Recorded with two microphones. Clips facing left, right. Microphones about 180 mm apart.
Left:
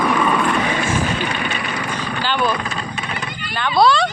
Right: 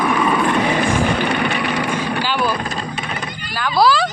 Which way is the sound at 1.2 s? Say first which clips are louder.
Right 4 dB; 65° right (ahead or behind).